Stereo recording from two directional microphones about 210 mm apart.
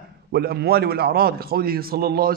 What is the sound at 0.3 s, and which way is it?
A man's voice, 50° right (ahead or behind).